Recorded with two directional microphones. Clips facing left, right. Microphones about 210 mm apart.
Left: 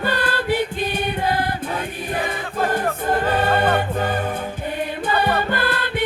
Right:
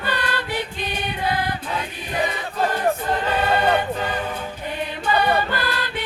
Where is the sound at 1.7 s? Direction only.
50° left (ahead or behind).